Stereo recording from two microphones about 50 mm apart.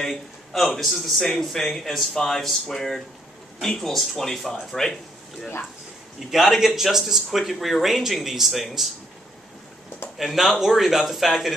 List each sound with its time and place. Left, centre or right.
0.0 s a man's voice: centre
1.2 s speech: centre
6.1 s speech: centre
10.1 s speech: centre